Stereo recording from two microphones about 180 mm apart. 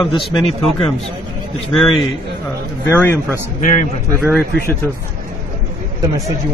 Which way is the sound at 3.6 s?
45° left (ahead or behind).